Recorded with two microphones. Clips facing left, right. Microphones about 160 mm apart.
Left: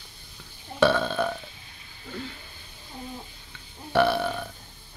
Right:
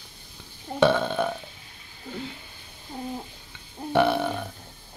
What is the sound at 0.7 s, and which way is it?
Burping, 20° right (ahead or behind).